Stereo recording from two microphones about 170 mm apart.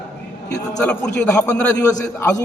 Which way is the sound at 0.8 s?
5° left (ahead or behind).